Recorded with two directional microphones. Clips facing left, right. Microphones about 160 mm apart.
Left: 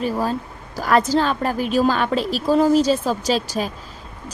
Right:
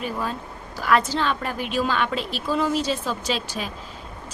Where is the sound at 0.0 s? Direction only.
35° left (ahead or behind).